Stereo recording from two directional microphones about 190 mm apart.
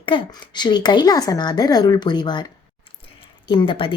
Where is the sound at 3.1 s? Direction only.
25° left (ahead or behind).